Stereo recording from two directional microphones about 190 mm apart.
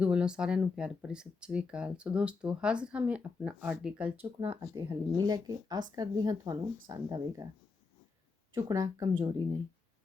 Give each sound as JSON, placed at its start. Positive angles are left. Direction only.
{"t": 0.0, "sound": "speech", "side_deg": -5}
{"t": 4.4, "sound": "speech", "side_deg": -20}
{"t": 8.5, "sound": "speech", "side_deg": -15}